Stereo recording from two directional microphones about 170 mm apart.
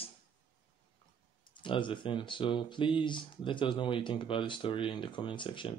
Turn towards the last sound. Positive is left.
turn(degrees=30)  # may be behind; listen again after turning